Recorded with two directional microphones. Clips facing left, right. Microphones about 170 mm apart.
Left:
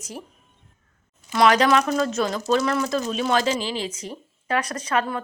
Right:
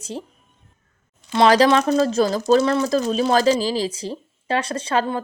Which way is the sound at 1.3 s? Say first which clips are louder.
Right 3 dB; 30° right (ahead or behind).